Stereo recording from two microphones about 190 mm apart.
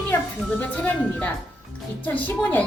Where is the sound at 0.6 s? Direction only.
5° left (ahead or behind).